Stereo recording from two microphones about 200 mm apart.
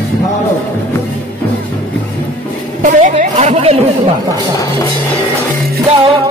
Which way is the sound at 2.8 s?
40° right (ahead or behind).